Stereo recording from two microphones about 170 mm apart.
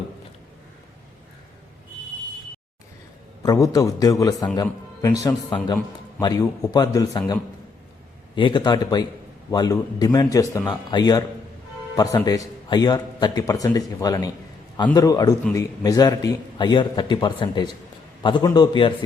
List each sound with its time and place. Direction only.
3.4 s a man's voice: 20° left (ahead or behind)
8.4 s a man's voice: 30° left (ahead or behind)